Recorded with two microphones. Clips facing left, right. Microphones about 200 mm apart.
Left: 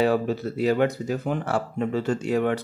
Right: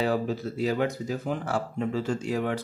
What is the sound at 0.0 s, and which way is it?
Speech, 65° left (ahead or behind).